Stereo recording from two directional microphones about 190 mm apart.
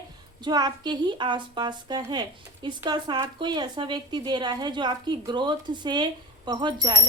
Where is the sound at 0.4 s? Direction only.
20° right (ahead or behind).